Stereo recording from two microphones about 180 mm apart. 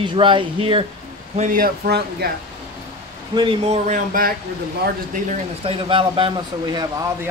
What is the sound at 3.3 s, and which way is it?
Speech, 35° right (ahead or behind).